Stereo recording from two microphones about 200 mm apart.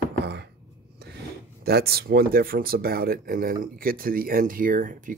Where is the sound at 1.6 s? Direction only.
50° right (ahead or behind).